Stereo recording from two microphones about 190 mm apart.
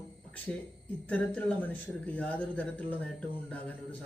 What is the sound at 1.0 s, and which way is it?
Speech, 5° left (ahead or behind).